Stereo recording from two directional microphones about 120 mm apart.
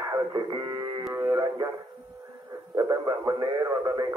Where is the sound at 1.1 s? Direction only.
20° right (ahead or behind).